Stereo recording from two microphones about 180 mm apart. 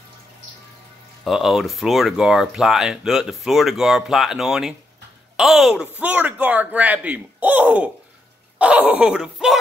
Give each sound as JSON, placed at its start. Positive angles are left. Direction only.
{"t": 1.2, "sound": "a man's voice", "side_deg": 0}